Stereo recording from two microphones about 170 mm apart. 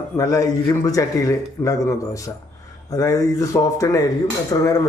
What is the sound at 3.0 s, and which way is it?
Speech, 20° left (ahead or behind).